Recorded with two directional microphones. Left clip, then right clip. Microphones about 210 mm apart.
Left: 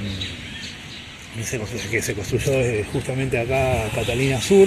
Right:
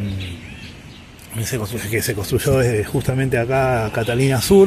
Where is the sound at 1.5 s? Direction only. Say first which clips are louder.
Right 2 dB; 20° right (ahead or behind).